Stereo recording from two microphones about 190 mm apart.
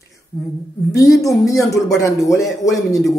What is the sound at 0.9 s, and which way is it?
A man's voice, 15° left (ahead or behind).